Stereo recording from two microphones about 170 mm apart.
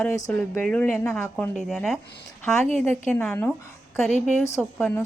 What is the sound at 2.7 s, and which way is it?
Speech, 10° left (ahead or behind).